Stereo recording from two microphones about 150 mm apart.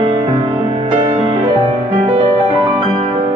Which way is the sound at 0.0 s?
30° right (ahead or behind).